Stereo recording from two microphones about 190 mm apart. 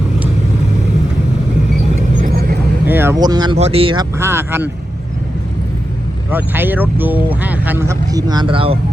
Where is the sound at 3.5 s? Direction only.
30° right (ahead or behind).